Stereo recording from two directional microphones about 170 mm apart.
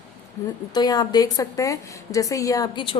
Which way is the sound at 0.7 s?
25° left (ahead or behind).